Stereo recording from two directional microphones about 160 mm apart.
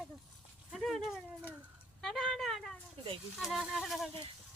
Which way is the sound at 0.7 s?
Centre (ahead or behind).